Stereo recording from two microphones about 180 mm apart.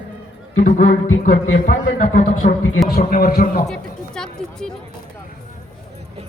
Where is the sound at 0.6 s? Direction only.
45° left (ahead or behind).